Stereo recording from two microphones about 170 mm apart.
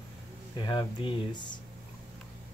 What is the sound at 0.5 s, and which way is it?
Speech, 25° left (ahead or behind).